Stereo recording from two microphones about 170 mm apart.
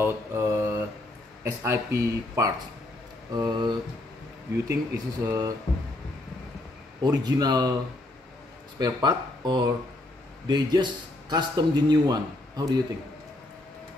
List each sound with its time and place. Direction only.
0.0 s mantra: 15° right (ahead or behind)
1.4 s a man's voice: 15° right (ahead or behind)
7.0 s a man's voice: 25° right (ahead or behind)
8.7 s a man's voice: 25° right (ahead or behind)